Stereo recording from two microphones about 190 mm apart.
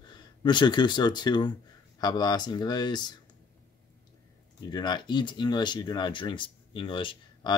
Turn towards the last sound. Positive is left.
turn(degrees=25)  # may be behind; listen again after turning